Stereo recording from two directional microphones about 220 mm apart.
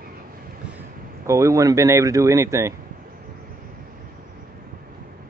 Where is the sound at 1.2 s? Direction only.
15° right (ahead or behind).